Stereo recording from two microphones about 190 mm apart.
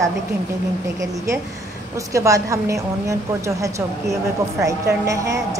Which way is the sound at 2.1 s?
15° right (ahead or behind).